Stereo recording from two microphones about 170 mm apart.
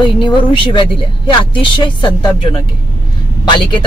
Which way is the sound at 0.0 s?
30° left (ahead or behind).